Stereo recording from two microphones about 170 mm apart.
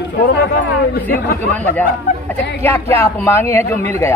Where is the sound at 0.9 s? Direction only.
65° left (ahead or behind).